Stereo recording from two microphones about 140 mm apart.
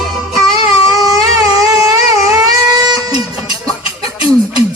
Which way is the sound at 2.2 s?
25° right (ahead or behind).